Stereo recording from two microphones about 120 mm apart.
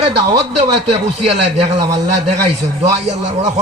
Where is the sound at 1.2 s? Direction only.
60° right (ahead or behind).